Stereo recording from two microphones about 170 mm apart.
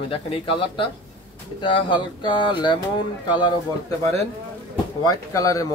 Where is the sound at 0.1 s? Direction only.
30° left (ahead or behind).